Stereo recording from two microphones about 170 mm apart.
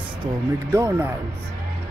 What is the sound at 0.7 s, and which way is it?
Speech, 15° right (ahead or behind).